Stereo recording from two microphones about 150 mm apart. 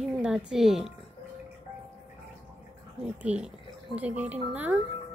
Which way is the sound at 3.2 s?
5° right (ahead or behind).